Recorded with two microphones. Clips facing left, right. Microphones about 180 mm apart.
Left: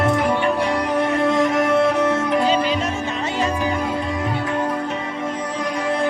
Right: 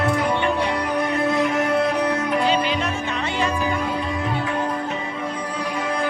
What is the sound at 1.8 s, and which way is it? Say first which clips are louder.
Music: left 3 dB; 25° left (ahead or behind).